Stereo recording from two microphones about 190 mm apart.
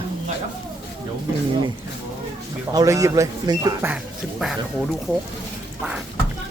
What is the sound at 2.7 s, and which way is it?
Speech, 15° right (ahead or behind).